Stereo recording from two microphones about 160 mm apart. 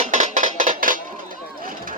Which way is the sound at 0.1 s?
50° right (ahead or behind).